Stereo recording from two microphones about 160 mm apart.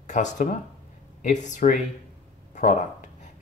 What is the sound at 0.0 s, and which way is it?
Speech, 50° left (ahead or behind).